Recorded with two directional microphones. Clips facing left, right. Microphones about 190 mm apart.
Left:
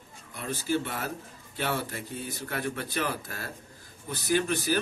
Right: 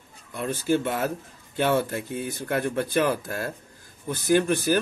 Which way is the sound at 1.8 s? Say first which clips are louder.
Right 8 dB; 55° right (ahead or behind).